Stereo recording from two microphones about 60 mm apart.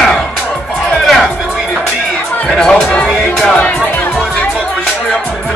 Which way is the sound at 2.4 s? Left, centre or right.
Centre.